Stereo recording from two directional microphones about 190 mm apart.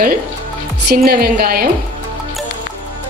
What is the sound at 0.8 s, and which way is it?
Speech, 55° right (ahead or behind).